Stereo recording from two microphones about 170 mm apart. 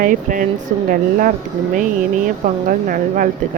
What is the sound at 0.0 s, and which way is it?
Speech, 50° right (ahead or behind).